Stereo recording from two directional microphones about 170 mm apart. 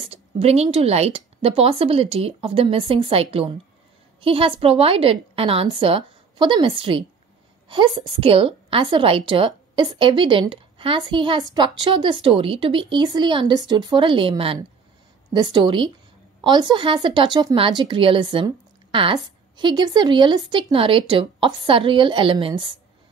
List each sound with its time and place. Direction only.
0.0 s a woman's voice: 35° right (ahead or behind)